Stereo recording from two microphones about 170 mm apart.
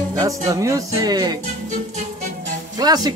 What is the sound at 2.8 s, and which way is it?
Music, 25° right (ahead or behind).